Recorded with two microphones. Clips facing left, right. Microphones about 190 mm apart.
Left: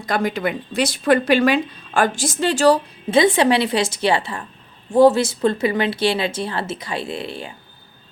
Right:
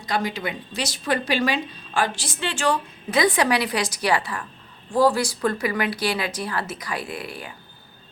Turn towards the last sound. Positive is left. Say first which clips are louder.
# left 5 dB
turn(degrees=25)  # may be behind; listen again after turning